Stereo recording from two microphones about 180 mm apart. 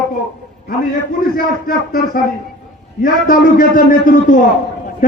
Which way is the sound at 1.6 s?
55° left (ahead or behind).